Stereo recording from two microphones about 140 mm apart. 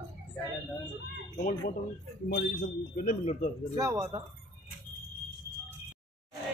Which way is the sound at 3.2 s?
55° left (ahead or behind).